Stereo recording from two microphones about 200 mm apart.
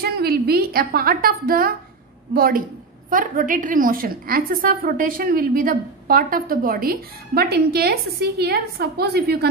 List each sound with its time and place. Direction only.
0.0 s a woman's voice: 50° right (ahead or behind)